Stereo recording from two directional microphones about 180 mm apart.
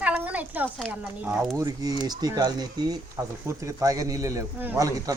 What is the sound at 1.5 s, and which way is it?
Speech, 20° right (ahead or behind).